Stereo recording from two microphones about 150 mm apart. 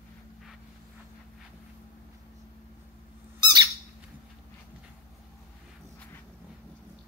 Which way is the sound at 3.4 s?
30° right (ahead or behind).